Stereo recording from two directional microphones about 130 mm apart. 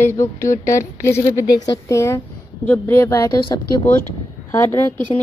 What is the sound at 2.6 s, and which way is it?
Speech, 15° left (ahead or behind).